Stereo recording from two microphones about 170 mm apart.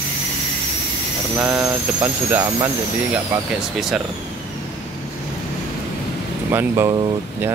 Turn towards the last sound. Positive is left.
turn(degrees=-15)  # may be behind; listen again after turning